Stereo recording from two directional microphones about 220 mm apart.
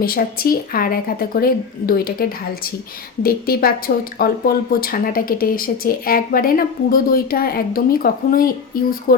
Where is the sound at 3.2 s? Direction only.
40° left (ahead or behind).